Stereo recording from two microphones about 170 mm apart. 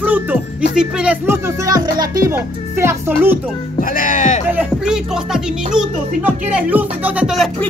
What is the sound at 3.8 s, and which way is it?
Speech, 55° left (ahead or behind).